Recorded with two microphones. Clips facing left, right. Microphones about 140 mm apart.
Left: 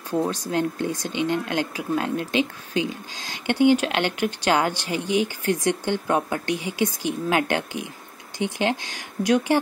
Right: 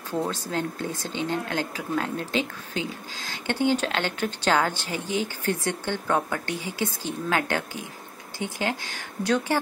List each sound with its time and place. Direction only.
0.1 s speech: 15° left (ahead or behind)